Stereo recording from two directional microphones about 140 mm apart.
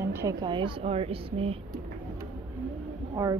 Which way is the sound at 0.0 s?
20° right (ahead or behind).